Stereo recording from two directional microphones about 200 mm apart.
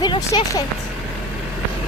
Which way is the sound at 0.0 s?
20° left (ahead or behind).